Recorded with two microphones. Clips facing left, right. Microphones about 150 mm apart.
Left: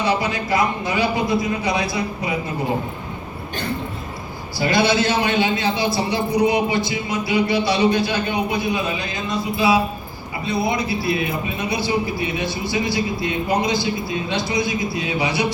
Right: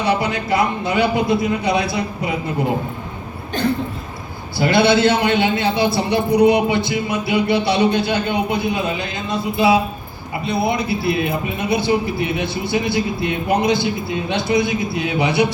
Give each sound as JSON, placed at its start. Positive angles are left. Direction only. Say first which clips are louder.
{"t": 0.0, "sound": "a man's voice", "louder": "right 2 dB", "side_deg": -60}
{"t": 4.5, "sound": "a man's voice", "louder": "right 4 dB", "side_deg": -60}